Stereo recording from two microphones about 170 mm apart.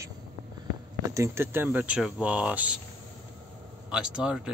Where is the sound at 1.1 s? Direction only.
15° right (ahead or behind).